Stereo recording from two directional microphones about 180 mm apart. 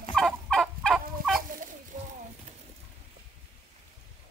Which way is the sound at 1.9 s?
45° right (ahead or behind).